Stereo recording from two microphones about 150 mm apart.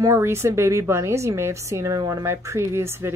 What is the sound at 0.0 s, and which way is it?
Speech, 15° right (ahead or behind).